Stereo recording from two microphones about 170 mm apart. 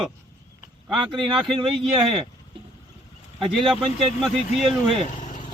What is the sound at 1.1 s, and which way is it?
Speech, 30° right (ahead or behind).